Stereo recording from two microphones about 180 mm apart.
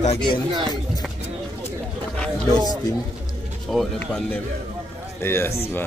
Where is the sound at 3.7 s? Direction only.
Centre (ahead or behind).